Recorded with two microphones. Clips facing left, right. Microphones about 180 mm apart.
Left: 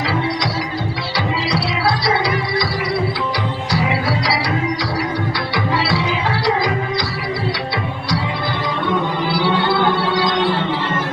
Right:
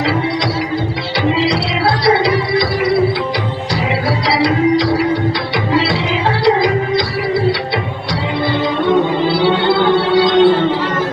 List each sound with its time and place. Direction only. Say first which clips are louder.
1.4 s music: right 5 dB; 25° right (ahead or behind)
6.4 s music: right 8 dB; 25° right (ahead or behind)
8.9 s music: right 7 dB; 30° right (ahead or behind)